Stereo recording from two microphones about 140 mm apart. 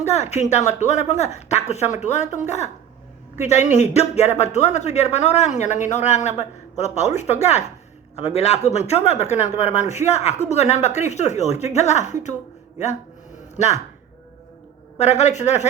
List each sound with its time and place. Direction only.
0.0 s speech: 50° left (ahead or behind)
14.9 s speech: 50° left (ahead or behind)